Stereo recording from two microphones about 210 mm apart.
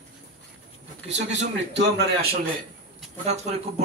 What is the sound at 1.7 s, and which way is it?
Speech, 55° right (ahead or behind).